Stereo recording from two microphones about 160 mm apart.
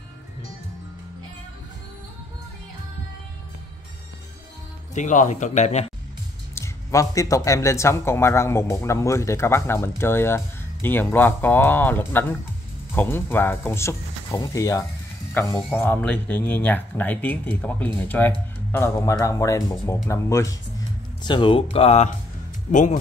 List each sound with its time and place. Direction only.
4.9 s speech: 50° left (ahead or behind)
6.5 s speech: 20° left (ahead or behind)
21.2 s speech: 30° left (ahead or behind); by 22.9 s 50° left (ahead or behind)